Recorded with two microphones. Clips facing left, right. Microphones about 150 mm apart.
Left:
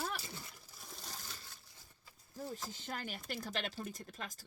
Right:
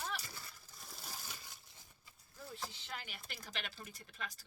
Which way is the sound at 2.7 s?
45° left (ahead or behind).